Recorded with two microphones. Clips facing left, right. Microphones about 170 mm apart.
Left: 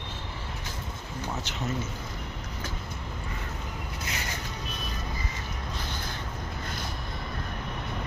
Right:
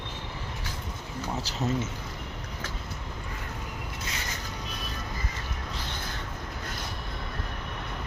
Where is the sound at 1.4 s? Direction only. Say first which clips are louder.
Right 2 dB; 35° right (ahead or behind).